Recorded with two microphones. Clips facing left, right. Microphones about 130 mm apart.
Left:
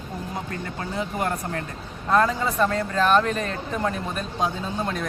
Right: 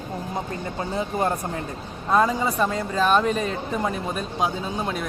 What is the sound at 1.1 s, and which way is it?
Speech, 25° right (ahead or behind).